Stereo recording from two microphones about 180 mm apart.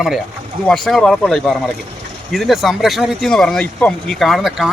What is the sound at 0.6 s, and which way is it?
Speech, centre (ahead or behind).